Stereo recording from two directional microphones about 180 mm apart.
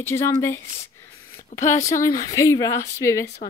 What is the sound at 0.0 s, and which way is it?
Speech, 15° left (ahead or behind).